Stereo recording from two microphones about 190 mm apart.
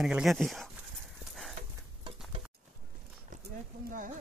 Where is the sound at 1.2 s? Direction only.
Centre (ahead or behind).